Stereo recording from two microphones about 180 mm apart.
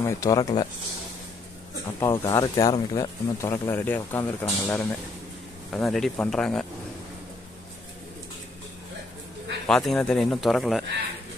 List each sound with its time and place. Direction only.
0.0 s speech: 20° left (ahead or behind)
2.0 s speech: 15° left (ahead or behind)
9.7 s speech: 5° left (ahead or behind)